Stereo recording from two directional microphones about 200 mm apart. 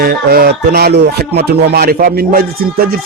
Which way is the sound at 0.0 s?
50° right (ahead or behind).